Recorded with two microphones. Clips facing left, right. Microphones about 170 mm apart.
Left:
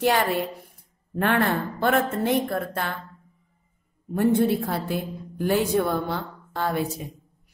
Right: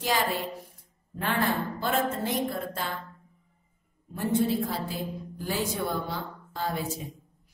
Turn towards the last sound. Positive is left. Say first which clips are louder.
# left 6 dB
turn(degrees=60)  # may be behind; listen again after turning